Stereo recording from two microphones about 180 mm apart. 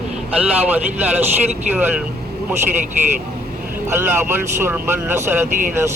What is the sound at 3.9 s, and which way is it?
Speech, 15° right (ahead or behind).